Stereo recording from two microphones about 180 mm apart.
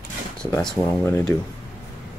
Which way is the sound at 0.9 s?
10° left (ahead or behind).